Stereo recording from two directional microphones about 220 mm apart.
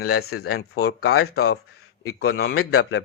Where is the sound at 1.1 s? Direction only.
75° left (ahead or behind).